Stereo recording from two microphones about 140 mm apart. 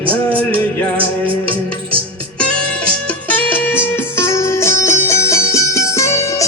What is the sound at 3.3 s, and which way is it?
Music, 10° left (ahead or behind).